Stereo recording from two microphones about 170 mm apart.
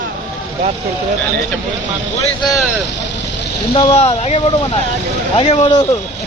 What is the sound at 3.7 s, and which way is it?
Speech, 35° left (ahead or behind).